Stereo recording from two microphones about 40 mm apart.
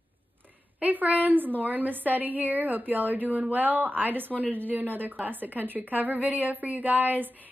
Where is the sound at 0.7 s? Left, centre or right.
Right.